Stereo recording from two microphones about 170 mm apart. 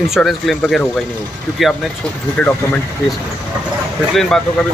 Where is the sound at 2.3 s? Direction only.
5° left (ahead or behind).